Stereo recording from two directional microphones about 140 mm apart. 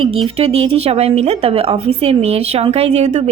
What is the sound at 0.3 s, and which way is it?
A woman's voice, 45° right (ahead or behind).